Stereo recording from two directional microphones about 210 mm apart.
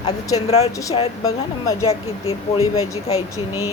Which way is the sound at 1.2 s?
15° left (ahead or behind).